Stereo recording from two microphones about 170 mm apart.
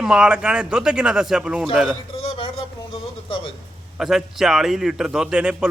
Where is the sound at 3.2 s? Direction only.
30° left (ahead or behind).